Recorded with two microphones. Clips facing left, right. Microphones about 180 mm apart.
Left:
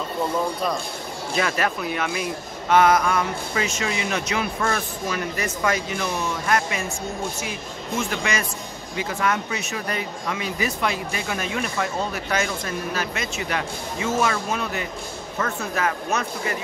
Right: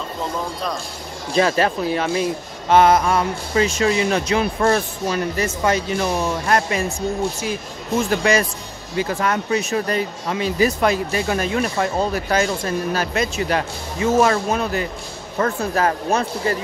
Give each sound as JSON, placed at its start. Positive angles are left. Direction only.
{"t": 1.3, "sound": "speech", "side_deg": -30}
{"t": 8.1, "sound": "speech", "side_deg": -35}